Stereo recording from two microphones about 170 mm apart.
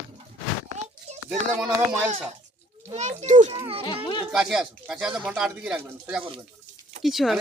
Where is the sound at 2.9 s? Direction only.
40° right (ahead or behind).